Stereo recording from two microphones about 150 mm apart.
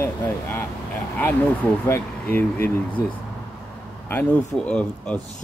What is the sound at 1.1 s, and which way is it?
Speech, 10° left (ahead or behind).